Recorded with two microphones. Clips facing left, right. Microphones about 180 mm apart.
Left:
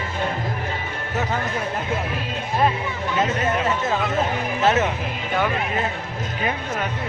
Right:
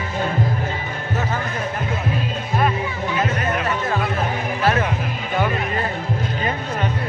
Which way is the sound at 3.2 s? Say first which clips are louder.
Left 2 dB; 25° left (ahead or behind).